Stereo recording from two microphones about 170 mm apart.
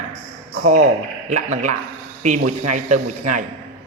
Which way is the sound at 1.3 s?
45° right (ahead or behind).